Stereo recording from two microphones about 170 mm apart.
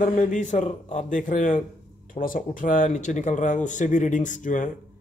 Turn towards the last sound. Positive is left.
turn(degrees=50)  # may be behind; listen again after turning